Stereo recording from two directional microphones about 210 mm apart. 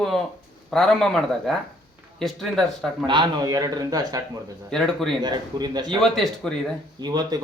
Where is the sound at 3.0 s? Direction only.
20° right (ahead or behind).